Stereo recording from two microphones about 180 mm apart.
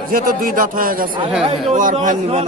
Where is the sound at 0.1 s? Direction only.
50° right (ahead or behind).